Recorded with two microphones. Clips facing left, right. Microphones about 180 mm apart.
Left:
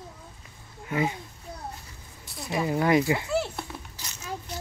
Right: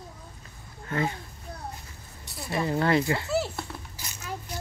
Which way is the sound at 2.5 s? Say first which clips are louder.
Left 1 dB; 10° left (ahead or behind).